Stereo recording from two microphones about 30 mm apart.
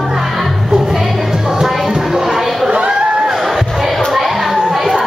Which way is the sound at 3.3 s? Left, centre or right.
Centre.